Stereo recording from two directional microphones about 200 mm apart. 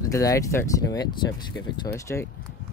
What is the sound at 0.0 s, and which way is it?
Speech, 15° left (ahead or behind).